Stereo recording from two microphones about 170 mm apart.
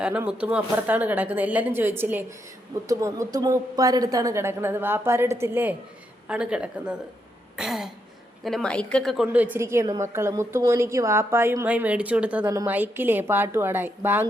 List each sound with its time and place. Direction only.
0.0 s a woman's voice: 10° right (ahead or behind)
7.5 s throat clearing: centre (ahead or behind)
8.4 s a woman's voice: 5° left (ahead or behind)
9.2 s a woman's voice: 10° right (ahead or behind)